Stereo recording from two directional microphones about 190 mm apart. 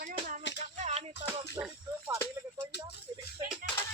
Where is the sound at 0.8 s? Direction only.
35° right (ahead or behind).